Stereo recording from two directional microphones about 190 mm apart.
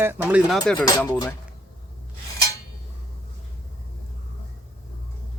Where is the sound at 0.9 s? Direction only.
20° left (ahead or behind).